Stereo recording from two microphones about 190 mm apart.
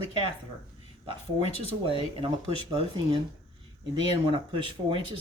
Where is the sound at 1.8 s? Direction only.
30° right (ahead or behind).